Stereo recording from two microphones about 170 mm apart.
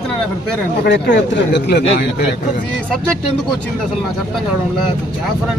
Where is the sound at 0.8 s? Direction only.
90° left.